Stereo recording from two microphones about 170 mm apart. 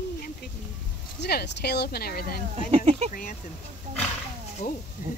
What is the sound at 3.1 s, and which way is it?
Speech, 50° left (ahead or behind).